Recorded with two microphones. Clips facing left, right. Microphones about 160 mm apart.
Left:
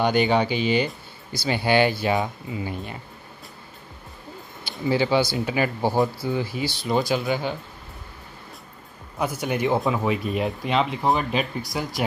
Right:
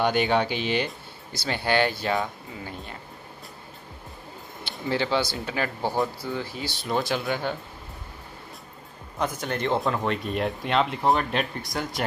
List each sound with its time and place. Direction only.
0.0 s speech: centre (ahead or behind)
4.6 s speech: 5° left (ahead or behind)
9.2 s speech: 10° left (ahead or behind)